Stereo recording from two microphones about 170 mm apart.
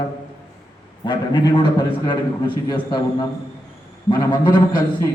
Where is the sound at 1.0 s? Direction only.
25° left (ahead or behind).